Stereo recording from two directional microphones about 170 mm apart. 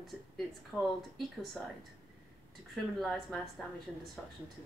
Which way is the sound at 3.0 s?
Centre (ahead or behind).